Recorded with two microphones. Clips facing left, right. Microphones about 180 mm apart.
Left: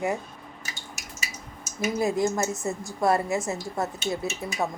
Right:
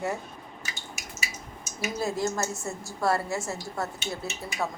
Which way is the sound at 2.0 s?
15° left (ahead or behind).